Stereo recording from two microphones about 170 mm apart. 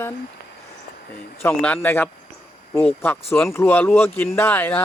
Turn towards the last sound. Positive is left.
turn(degrees=10)  # may be behind; listen again after turning